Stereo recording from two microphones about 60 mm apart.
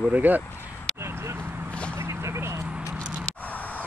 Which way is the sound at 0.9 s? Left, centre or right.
Right.